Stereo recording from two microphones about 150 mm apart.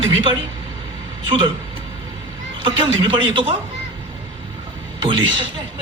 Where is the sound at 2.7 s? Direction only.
35° right (ahead or behind).